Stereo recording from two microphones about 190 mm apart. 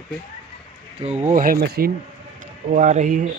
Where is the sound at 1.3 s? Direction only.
50° right (ahead or behind).